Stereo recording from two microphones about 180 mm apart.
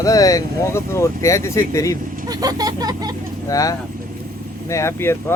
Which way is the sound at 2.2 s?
20° right (ahead or behind).